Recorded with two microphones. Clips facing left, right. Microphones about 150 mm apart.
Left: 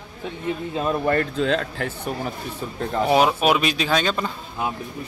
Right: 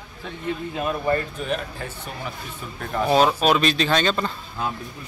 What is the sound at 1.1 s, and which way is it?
Speech, 80° left.